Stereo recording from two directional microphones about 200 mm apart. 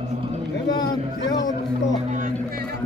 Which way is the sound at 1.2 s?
20° left (ahead or behind).